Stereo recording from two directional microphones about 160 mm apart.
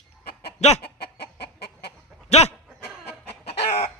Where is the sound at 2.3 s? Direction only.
40° left (ahead or behind).